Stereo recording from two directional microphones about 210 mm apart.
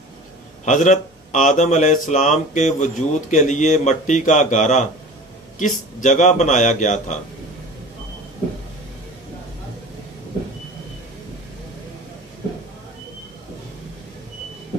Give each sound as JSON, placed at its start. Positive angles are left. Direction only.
{"t": 0.7, "sound": "speech", "side_deg": 35}